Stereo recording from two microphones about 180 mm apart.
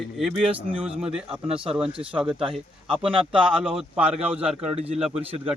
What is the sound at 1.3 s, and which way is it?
Speech, 35° right (ahead or behind).